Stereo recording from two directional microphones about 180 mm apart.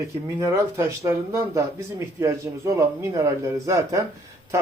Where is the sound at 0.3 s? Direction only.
15° right (ahead or behind).